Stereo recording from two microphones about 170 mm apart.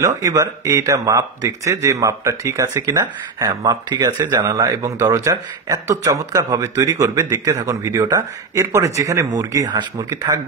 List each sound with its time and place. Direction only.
0.0 s a man's voice: 20° right (ahead or behind)